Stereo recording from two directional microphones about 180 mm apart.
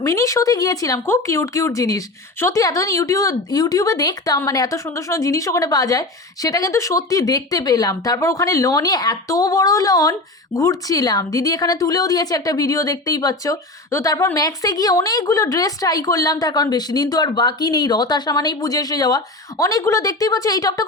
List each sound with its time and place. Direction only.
0.0 s speech: 15° left (ahead or behind)